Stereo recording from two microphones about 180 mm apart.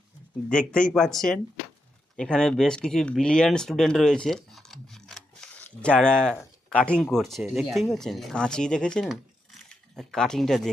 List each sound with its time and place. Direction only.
0.7 s speech: 5° left (ahead or behind)